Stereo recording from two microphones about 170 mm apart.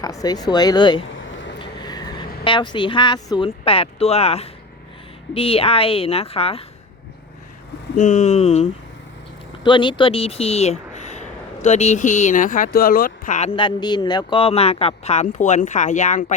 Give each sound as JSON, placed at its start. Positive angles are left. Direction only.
{"t": 0.0, "sound": "speech", "side_deg": 20}
{"t": 1.2, "sound": "a sound", "side_deg": 90}
{"t": 1.5, "sound": "vehicle", "side_deg": 25}
{"t": 2.4, "sound": "speech", "side_deg": 30}
{"t": 7.9, "sound": "speech", "side_deg": 45}
{"t": 13.6, "sound": "speech", "side_deg": 30}